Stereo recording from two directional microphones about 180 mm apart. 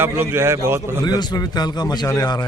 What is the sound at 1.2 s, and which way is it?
A man's voice, 25° left (ahead or behind).